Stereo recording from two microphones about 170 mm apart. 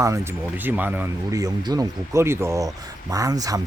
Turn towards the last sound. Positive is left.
turn(degrees=-20)  # may be behind; listen again after turning